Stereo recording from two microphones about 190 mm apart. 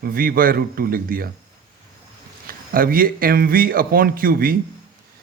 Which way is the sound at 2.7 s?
50° right (ahead or behind).